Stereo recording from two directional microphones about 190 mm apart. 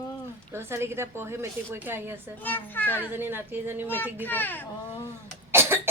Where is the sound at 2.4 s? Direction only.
10° left (ahead or behind).